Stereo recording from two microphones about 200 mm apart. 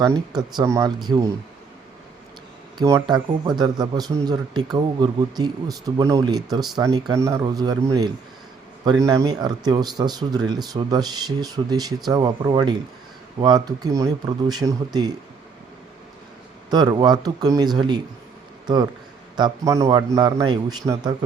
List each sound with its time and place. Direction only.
0.0 s a man's voice: 20° right (ahead or behind)
2.7 s a man's voice: 20° right (ahead or behind)
16.6 s a man's voice: 20° right (ahead or behind)
19.4 s a man's voice: 20° right (ahead or behind)